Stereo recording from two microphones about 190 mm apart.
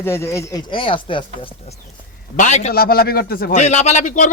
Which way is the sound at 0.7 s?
25° left (ahead or behind).